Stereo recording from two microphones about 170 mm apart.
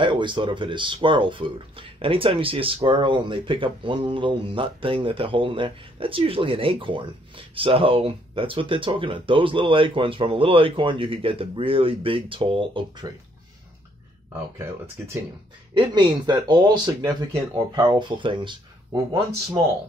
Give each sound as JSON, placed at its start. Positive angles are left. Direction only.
{"t": 0.0, "sound": "speech", "side_deg": -30}
{"t": 15.7, "sound": "speech", "side_deg": -25}